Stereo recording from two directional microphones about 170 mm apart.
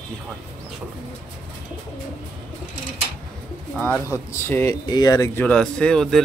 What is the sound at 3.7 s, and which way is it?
Speech, 5° left (ahead or behind).